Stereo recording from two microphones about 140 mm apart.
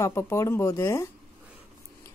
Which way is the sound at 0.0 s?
20° left (ahead or behind).